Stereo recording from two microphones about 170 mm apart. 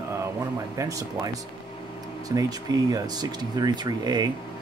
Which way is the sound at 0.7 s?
20° right (ahead or behind).